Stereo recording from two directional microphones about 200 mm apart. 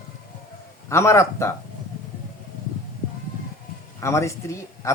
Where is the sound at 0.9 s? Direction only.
15° left (ahead or behind).